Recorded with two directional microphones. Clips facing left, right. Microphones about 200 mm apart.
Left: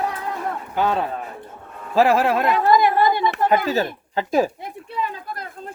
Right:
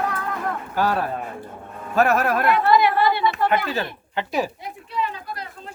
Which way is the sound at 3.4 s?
40° left (ahead or behind).